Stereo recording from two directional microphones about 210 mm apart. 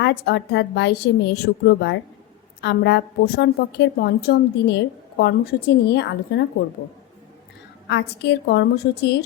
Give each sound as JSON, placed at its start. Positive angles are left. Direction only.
{"t": 0.0, "sound": "a woman's voice", "side_deg": 55}
{"t": 7.9, "sound": "a woman's voice", "side_deg": 55}